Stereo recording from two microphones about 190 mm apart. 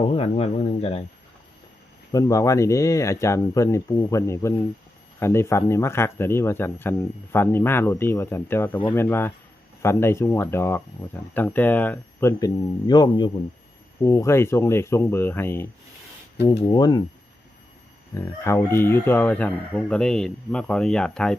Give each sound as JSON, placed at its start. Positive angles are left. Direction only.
{"t": 0.1, "sound": "a sound", "side_deg": 30}
{"t": 2.1, "sound": "speech", "side_deg": 15}
{"t": 16.5, "sound": "speech", "side_deg": 20}
{"t": 18.1, "sound": "speech", "side_deg": 15}